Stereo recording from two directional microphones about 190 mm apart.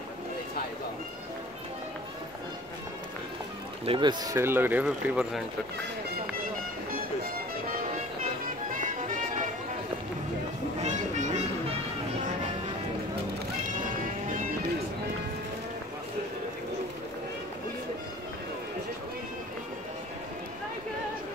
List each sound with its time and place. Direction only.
3.8 s speech: 25° right (ahead or behind); by 5.4 s 5° right (ahead or behind)
6.9 s music: 50° right (ahead or behind)
10.8 s music: 40° right (ahead or behind)